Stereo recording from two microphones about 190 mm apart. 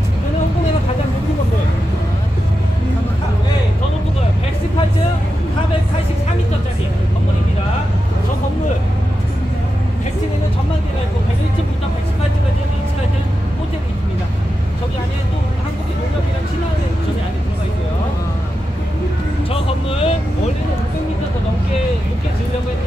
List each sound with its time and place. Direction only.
19.5 s vehicle: 30° left (ahead or behind)